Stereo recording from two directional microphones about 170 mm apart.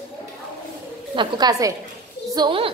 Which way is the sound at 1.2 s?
25° right (ahead or behind).